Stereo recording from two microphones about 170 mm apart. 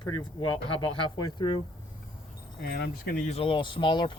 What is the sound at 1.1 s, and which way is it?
Speech, 25° left (ahead or behind).